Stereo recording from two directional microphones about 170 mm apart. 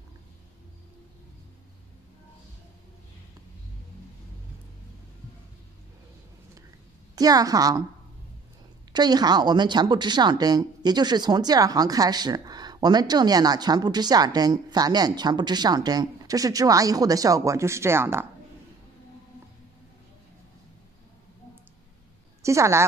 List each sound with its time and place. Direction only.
7.2 s a woman's voice: 20° right (ahead or behind)
8.9 s a woman's voice: 25° right (ahead or behind)
22.4 s a woman's voice: 15° right (ahead or behind)